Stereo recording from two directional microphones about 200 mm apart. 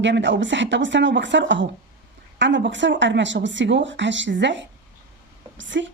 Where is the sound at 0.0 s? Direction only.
65° right (ahead or behind).